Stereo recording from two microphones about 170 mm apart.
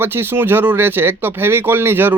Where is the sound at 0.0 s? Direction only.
15° right (ahead or behind).